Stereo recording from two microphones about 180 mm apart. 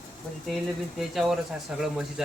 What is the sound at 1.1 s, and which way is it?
Speech, centre (ahead or behind).